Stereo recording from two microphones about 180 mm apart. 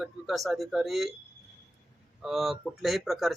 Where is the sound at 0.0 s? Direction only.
Centre (ahead or behind).